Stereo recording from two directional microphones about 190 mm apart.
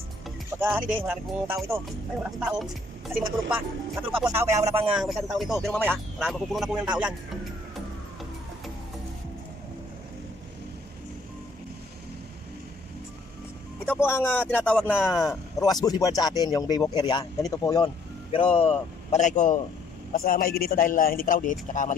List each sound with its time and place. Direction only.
0.6 s speech: 10° right (ahead or behind)
13.8 s a man's voice: 10° left (ahead or behind); by 21.9 s 40° left (ahead or behind)